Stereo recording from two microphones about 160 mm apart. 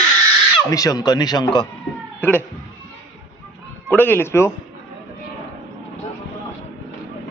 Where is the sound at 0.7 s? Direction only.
20° left (ahead or behind).